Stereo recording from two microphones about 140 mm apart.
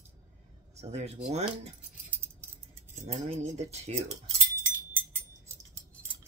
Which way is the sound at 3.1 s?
50° right (ahead or behind).